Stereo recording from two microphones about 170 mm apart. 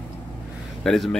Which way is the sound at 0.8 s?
Centre (ahead or behind).